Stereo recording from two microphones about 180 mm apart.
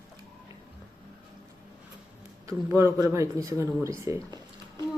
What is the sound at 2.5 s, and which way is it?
Speech, 15° right (ahead or behind).